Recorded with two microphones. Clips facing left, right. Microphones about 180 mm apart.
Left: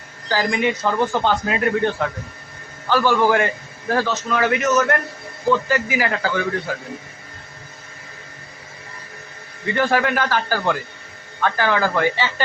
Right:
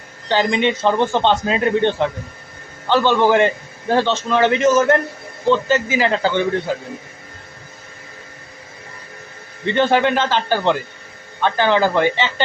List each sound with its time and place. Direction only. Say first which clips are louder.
0.3 s a man's voice: right 3 dB; 25° right (ahead or behind)
9.6 s a man's voice: right 4 dB; 25° right (ahead or behind)